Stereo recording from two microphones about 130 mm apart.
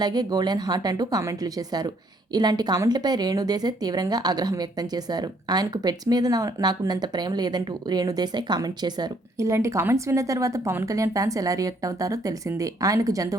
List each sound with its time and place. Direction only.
0.0 s a woman's voice: 30° right (ahead or behind)